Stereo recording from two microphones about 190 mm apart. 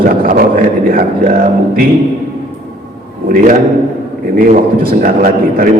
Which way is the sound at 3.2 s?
45° right (ahead or behind).